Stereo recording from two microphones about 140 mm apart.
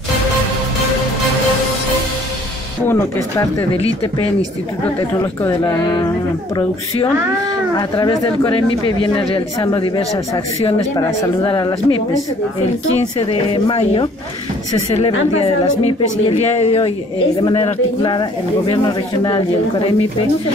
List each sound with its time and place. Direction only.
2.9 s speech: 20° left (ahead or behind)
3.7 s a woman's voice: 45° left (ahead or behind)
5.1 s speech: 20° left (ahead or behind)
8.0 s a woman's voice: 40° left (ahead or behind)